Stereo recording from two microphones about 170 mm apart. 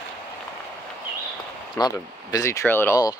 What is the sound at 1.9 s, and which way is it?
Speech, 20° left (ahead or behind).